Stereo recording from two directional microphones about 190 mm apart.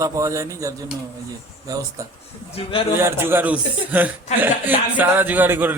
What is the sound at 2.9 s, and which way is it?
A man's voice, 10° right (ahead or behind).